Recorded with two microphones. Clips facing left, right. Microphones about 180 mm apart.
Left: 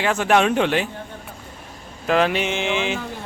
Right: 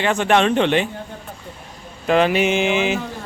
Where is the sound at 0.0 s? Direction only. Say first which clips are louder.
Right 1 dB; 5° left (ahead or behind).